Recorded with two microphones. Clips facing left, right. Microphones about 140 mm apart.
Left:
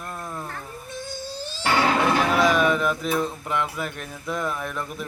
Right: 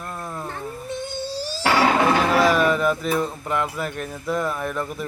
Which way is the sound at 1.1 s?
30° right (ahead or behind).